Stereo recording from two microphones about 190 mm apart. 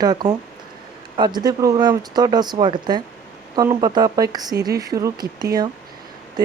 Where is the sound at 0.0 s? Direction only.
20° right (ahead or behind).